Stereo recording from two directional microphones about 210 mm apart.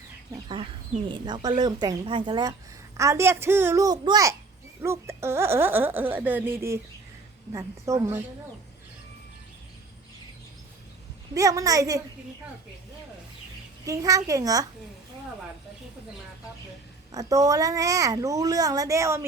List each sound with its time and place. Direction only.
0.3 s a woman's voice: 25° right (ahead or behind)
11.3 s a woman's voice: 15° right (ahead or behind)
13.8 s a woman's voice: 15° right (ahead or behind)
17.1 s a woman's voice: 15° right (ahead or behind)